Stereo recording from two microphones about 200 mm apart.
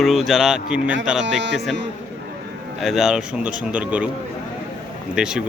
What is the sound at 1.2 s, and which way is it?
Speech, 65° right (ahead or behind).